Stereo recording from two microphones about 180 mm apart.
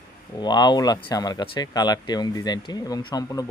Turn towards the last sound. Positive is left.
turn(degrees=20)  # may be behind; listen again after turning